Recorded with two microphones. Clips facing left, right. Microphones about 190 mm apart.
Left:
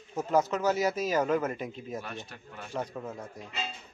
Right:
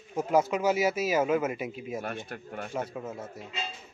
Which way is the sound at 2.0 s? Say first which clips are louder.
Right 5 dB; 50° right (ahead or behind).